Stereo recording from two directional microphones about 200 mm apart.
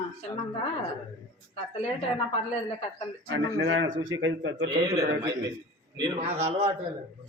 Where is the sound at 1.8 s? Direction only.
30° left (ahead or behind).